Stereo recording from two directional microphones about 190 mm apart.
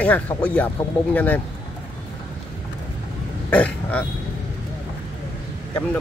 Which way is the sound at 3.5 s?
5° left (ahead or behind).